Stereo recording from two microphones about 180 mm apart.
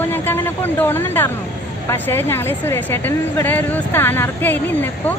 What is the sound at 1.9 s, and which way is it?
A woman's voice, 15° left (ahead or behind).